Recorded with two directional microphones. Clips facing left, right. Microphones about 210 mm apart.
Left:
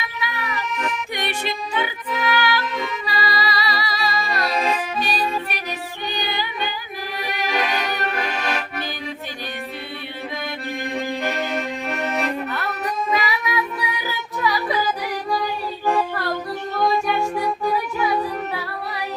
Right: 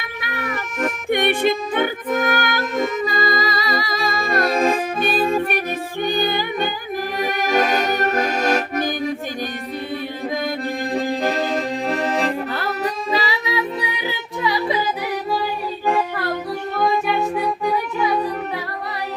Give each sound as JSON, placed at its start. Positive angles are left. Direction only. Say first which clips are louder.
{"t": 0.0, "sound": "music", "louder": "right 1 dB", "side_deg": -55}
{"t": 7.2, "sound": "accordion", "louder": "right 5 dB", "side_deg": -45}
{"t": 10.9, "sound": "music", "louder": "right 4 dB", "side_deg": -35}
{"t": 16.7, "sound": "music", "louder": "right 1 dB", "side_deg": 0}